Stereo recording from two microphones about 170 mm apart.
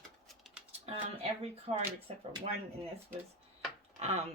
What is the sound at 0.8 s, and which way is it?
Speech, 35° right (ahead or behind).